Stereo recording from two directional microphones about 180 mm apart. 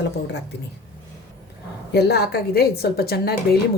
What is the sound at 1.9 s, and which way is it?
A woman's voice, 65° left (ahead or behind).